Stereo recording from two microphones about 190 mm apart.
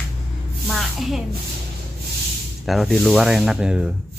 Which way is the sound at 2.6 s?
Centre (ahead or behind).